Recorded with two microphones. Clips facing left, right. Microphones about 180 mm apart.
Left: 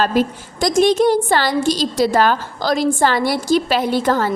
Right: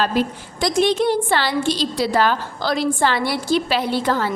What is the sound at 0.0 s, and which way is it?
A woman's voice, 45° left (ahead or behind).